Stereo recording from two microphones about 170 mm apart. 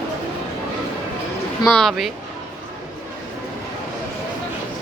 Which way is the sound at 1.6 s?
Centre (ahead or behind).